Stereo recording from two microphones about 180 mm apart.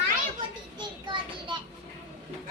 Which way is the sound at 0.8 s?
25° right (ahead or behind).